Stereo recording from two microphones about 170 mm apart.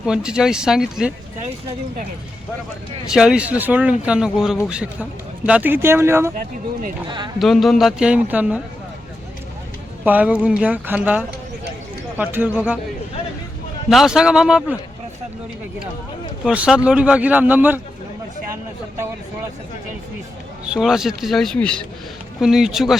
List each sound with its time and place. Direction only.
0.0 s a man's voice: 5° right (ahead or behind)
3.1 s a man's voice: 5° right (ahead or behind)
7.3 s a man's voice: centre (ahead or behind)
10.0 s speech: 10° right (ahead or behind)
13.9 s a man's voice: 5° right (ahead or behind)
16.4 s speech: 5° right (ahead or behind)
20.7 s a man's voice: 5° right (ahead or behind)